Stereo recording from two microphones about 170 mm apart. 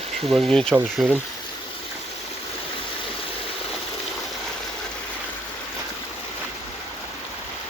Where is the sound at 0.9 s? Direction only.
10° right (ahead or behind).